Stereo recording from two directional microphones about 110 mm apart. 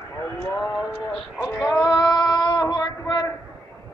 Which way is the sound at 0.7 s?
10° left (ahead or behind).